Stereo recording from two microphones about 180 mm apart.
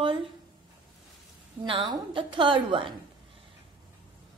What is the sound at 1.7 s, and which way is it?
A woman's voice, 30° right (ahead or behind).